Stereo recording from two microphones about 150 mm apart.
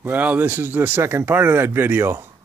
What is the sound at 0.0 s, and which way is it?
Speech, 10° right (ahead or behind).